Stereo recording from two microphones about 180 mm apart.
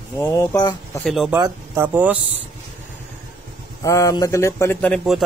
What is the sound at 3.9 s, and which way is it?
Speech, 20° left (ahead or behind).